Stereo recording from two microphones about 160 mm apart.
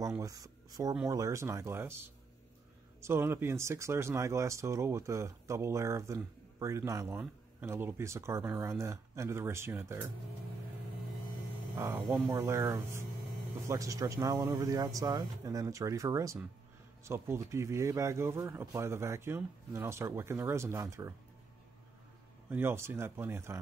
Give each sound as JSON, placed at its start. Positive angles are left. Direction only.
{"t": 0.2, "sound": "speech", "side_deg": -20}
{"t": 11.7, "sound": "speech", "side_deg": -15}
{"t": 22.5, "sound": "speech", "side_deg": -15}